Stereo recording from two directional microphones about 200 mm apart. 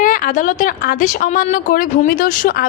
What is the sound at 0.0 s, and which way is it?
A woman's voice, 40° left (ahead or behind).